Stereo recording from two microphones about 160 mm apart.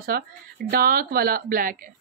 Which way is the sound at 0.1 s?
70° right (ahead or behind).